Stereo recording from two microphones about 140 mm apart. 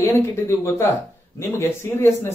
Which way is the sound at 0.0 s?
20° left (ahead or behind).